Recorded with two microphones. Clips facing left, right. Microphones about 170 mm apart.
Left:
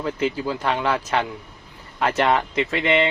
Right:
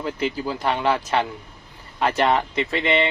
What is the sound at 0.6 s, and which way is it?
Speech, 35° right (ahead or behind).